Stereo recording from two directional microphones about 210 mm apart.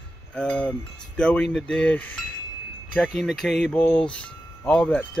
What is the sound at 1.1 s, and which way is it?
Speech, 5° left (ahead or behind).